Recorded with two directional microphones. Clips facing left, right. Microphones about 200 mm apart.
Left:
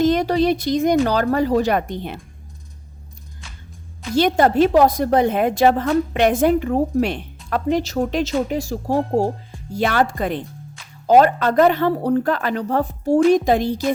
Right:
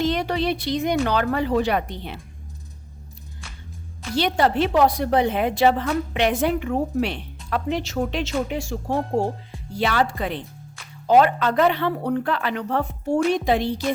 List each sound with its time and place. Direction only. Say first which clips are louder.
0.0 s a woman's voice: left 6 dB; 45° left (ahead or behind)
4.1 s a woman's voice: left 5 dB; 45° left (ahead or behind)
9.7 s a woman's voice: left 3 dB; 50° left (ahead or behind)